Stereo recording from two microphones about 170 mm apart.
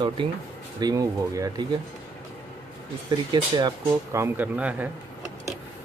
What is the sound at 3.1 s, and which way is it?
Speech, 25° right (ahead or behind).